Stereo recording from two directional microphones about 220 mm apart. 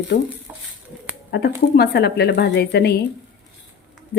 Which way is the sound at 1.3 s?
50° left (ahead or behind).